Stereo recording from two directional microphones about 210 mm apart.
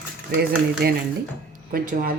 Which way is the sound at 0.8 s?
50° right (ahead or behind).